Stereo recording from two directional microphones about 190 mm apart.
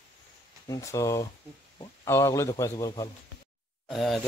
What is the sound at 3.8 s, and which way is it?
Speech, centre (ahead or behind).